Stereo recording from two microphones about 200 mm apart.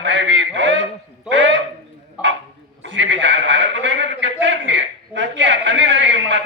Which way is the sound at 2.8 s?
65° right (ahead or behind).